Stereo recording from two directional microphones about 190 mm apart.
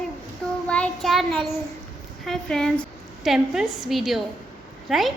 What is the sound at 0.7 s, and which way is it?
Child singing, 5° left (ahead or behind).